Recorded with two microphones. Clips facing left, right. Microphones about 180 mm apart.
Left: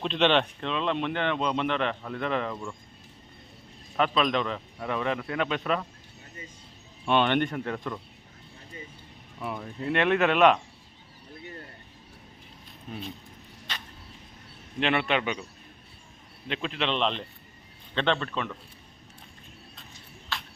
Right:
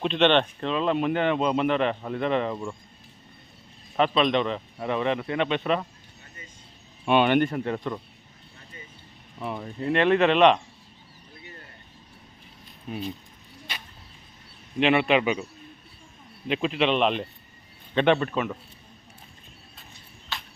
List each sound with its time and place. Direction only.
0.0 s speech: centre (ahead or behind)
2.5 s speech: 20° right (ahead or behind)
3.9 s speech: centre (ahead or behind)
7.0 s speech: 10° right (ahead or behind)
9.6 s speech: centre (ahead or behind)
13.7 s a sound: 10° right (ahead or behind)
14.8 s speech: 5° right (ahead or behind)
16.5 s speech: 10° right (ahead or behind)
20.3 s a sound: centre (ahead or behind)